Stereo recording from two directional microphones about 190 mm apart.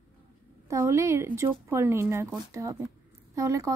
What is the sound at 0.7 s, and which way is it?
Speech, 15° right (ahead or behind).